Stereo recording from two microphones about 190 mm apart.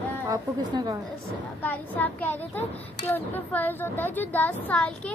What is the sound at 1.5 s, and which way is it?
Speech, 10° left (ahead or behind).